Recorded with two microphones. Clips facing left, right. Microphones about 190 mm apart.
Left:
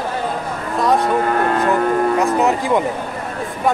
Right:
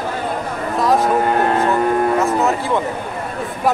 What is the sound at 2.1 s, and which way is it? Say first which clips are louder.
Cattle: left 1 dB; 15° left (ahead or behind).